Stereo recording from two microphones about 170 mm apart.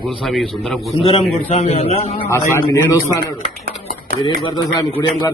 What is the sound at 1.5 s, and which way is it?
Speech, 40° left (ahead or behind).